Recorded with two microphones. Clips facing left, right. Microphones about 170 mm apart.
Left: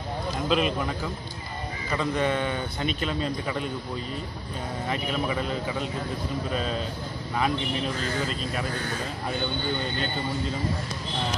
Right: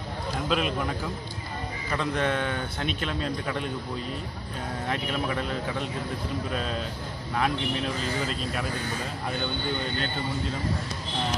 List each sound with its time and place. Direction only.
0.5 s speech: centre (ahead or behind)
4.8 s speech: centre (ahead or behind)